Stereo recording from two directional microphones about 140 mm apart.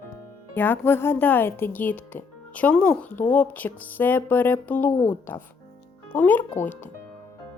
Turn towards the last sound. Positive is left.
turn(degrees=15)  # may be behind; listen again after turning